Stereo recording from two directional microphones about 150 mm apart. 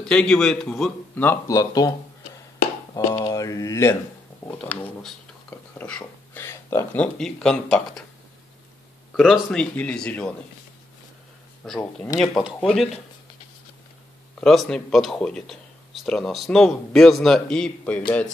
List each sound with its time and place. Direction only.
0.0 s speech: 5° left (ahead or behind)
1.2 s speech: 20° left (ahead or behind)
3.3 s mantra: 25° left (ahead or behind)
4.5 s speech: 10° left (ahead or behind)
9.1 s speech: centre (ahead or behind)
11.6 s speech: 5° left (ahead or behind)
14.4 s speech: 5° left (ahead or behind)